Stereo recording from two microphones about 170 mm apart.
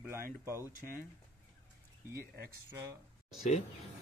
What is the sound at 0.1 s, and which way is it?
Speech, 15° right (ahead or behind).